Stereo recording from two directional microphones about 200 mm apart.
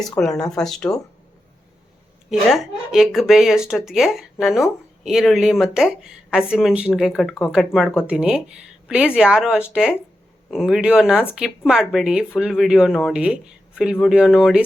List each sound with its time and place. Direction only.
0.0 s speech: centre (ahead or behind)
2.3 s speech: centre (ahead or behind)